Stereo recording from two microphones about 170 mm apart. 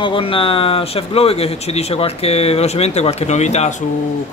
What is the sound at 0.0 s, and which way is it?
Speech, 30° left (ahead or behind).